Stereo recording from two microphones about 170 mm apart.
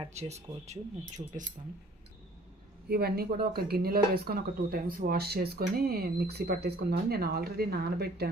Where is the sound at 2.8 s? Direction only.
65° right (ahead or behind).